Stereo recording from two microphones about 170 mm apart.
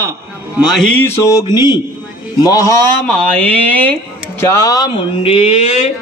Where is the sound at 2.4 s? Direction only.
20° left (ahead or behind).